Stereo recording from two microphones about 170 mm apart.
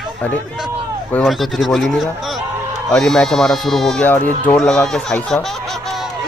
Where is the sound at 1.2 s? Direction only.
Centre (ahead or behind).